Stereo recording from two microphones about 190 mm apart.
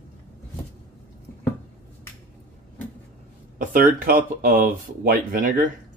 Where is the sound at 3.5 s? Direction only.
45° right (ahead or behind).